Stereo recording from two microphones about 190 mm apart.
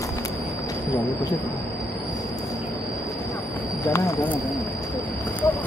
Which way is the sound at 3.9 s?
15° left (ahead or behind).